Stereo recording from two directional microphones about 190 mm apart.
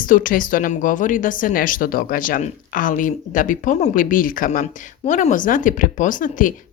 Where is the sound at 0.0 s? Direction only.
45° left (ahead or behind).